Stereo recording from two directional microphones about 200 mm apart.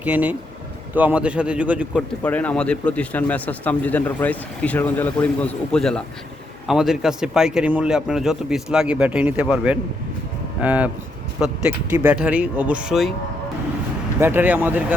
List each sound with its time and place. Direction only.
0.0 s speech: 5° right (ahead or behind)
2.0 s speech: 5° left (ahead or behind)
11.9 s speech: 10° right (ahead or behind)
14.2 s speech: 10° right (ahead or behind)